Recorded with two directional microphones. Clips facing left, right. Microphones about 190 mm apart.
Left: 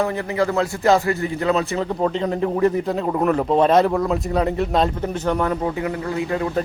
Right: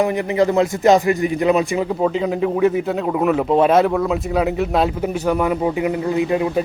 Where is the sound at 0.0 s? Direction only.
15° right (ahead or behind).